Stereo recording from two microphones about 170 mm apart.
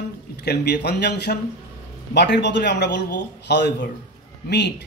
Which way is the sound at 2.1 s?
90° left.